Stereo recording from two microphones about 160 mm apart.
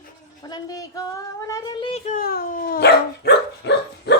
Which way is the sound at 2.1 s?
70° left (ahead or behind).